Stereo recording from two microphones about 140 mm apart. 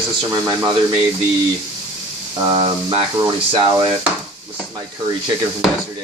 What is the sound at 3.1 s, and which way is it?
Speech, 30° right (ahead or behind).